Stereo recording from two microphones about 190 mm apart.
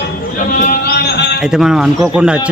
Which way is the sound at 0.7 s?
55° left (ahead or behind).